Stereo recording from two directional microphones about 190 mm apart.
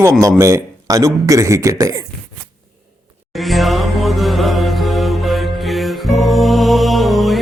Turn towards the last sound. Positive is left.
turn(degrees=0)  # may be behind; listen again after turning